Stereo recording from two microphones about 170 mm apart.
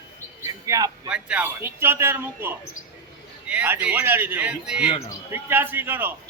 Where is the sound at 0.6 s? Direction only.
20° right (ahead or behind).